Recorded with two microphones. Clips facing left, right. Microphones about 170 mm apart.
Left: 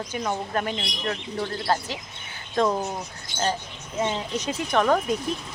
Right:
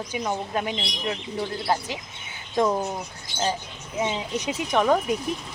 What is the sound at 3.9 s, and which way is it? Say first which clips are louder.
Speech: even; 10° right (ahead or behind).